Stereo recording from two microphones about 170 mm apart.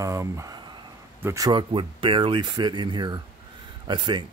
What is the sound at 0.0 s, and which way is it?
Speech, 20° right (ahead or behind).